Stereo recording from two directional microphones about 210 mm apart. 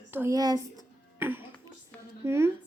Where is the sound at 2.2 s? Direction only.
10° right (ahead or behind).